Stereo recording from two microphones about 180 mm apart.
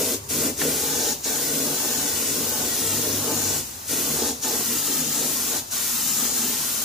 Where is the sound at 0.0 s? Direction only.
Centre (ahead or behind).